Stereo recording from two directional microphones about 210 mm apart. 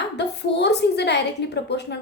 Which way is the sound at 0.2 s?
55° left (ahead or behind).